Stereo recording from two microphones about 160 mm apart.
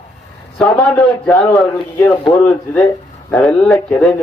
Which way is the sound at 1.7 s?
20° left (ahead or behind).